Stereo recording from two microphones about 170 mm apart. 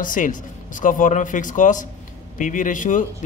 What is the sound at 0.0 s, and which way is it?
A man's voice, 50° left (ahead or behind).